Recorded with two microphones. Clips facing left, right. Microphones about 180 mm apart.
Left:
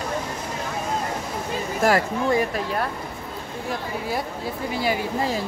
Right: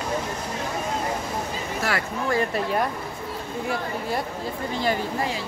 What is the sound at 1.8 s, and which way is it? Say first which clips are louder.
Speech: left 8 dB; 40° left (ahead or behind).